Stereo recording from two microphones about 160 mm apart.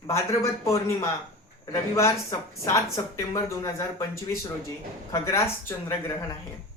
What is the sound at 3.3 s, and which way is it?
A woman's voice, 20° left (ahead or behind).